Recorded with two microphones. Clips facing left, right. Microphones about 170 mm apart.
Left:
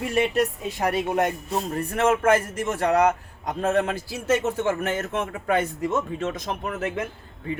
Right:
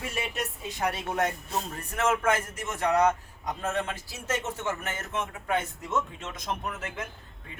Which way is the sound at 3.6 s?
70° left (ahead or behind).